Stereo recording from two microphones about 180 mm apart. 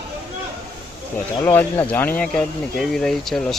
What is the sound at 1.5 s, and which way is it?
Speech, 10° left (ahead or behind).